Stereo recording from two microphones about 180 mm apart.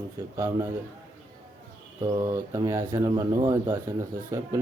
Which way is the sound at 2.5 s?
15° right (ahead or behind).